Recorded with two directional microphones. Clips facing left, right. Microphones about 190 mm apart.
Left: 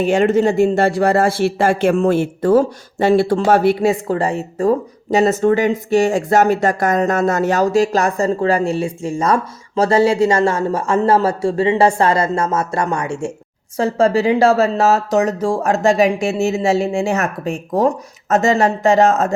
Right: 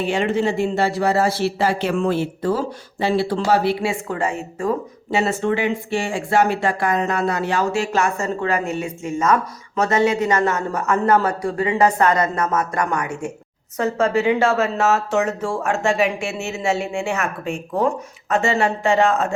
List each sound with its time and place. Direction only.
0.0 s a man's voice: 45° left (ahead or behind)